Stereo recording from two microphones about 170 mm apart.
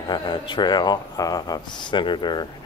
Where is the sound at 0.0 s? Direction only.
25° left (ahead or behind).